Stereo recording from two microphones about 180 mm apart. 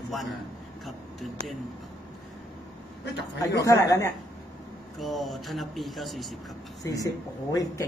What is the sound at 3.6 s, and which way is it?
Speech, 15° left (ahead or behind).